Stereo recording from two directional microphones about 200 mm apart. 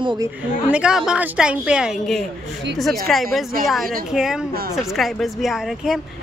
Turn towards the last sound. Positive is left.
turn(degrees=0)  # may be behind; listen again after turning